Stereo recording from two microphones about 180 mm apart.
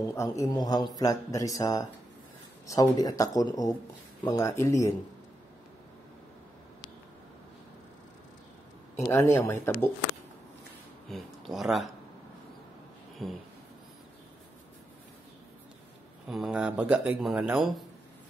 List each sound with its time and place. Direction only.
0.0 s speech: 15° left (ahead or behind)
9.0 s speech: 15° left (ahead or behind)
11.1 s speech: centre (ahead or behind)
16.3 s a man's voice: 5° right (ahead or behind)